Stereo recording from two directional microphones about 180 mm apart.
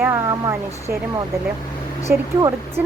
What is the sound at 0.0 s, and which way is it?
Speech, 15° right (ahead or behind).